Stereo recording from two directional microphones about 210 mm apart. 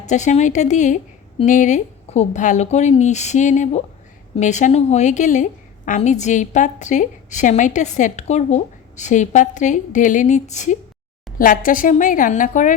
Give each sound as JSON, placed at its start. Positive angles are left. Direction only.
{"t": 0.0, "sound": "a woman's voice", "side_deg": 35}